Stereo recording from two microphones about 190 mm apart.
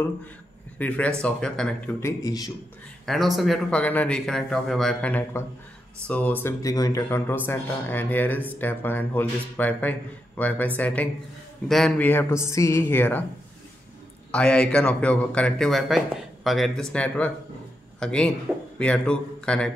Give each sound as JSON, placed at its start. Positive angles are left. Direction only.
{"t": 0.7, "sound": "speech", "side_deg": 10}
{"t": 2.0, "sound": "a man's voice", "side_deg": 15}
{"t": 3.1, "sound": "speech", "side_deg": 0}
{"t": 14.3, "sound": "speech", "side_deg": 5}